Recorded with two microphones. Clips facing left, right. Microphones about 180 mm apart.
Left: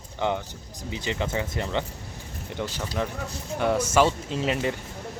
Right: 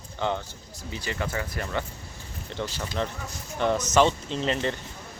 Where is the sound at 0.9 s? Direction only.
20° left (ahead or behind).